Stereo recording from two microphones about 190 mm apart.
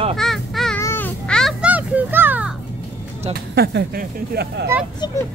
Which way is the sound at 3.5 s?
55° right (ahead or behind).